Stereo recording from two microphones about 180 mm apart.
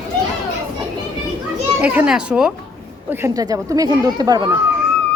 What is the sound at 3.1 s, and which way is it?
A child's voice, 15° right (ahead or behind).